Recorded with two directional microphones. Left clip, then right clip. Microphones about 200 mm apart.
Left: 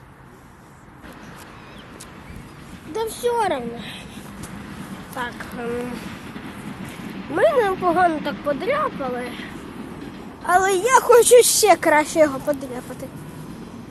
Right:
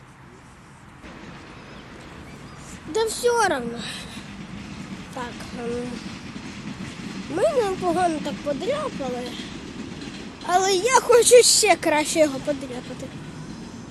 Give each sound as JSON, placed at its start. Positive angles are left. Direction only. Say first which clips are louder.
{"t": 2.9, "sound": "speech", "louder": "right 1 dB", "side_deg": -25}
{"t": 5.2, "sound": "speech", "louder": "left 5 dB", "side_deg": -10}
{"t": 7.3, "sound": "speech", "louder": "left 4 dB", "side_deg": -5}
{"t": 10.4, "sound": "a woman's voice", "louder": "left 3 dB", "side_deg": -5}
{"t": 11.8, "sound": "speech", "louder": "left 4 dB", "side_deg": -5}